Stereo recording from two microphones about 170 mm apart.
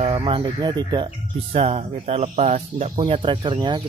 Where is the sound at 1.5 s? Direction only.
35° right (ahead or behind).